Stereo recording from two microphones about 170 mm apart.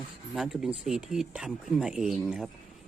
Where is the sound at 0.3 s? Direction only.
Centre (ahead or behind).